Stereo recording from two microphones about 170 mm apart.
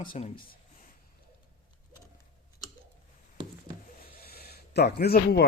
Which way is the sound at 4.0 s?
60° left (ahead or behind).